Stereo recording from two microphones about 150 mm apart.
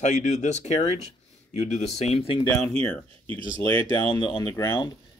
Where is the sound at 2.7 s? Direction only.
5° left (ahead or behind).